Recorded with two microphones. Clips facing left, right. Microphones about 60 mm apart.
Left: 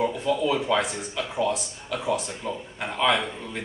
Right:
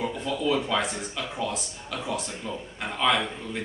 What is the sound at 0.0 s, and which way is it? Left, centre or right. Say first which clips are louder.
A man's voice: left 4 dB; centre.